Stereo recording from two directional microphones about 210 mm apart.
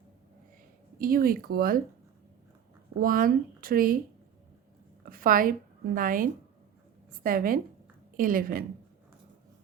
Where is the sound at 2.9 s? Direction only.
40° right (ahead or behind).